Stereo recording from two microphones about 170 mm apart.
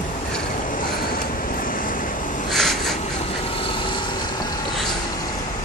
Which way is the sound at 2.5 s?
Centre (ahead or behind).